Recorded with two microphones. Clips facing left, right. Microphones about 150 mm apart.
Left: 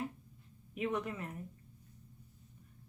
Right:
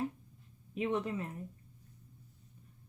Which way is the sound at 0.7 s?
30° right (ahead or behind).